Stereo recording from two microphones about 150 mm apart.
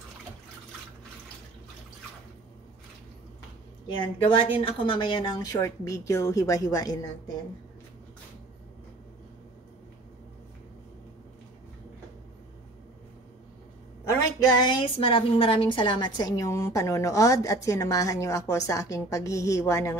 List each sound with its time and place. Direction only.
3.8 s speech: 35° left (ahead or behind)
14.4 s a woman's voice: 30° left (ahead or behind)